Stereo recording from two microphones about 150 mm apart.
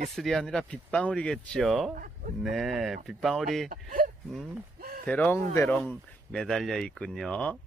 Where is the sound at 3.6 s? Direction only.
70° right (ahead or behind).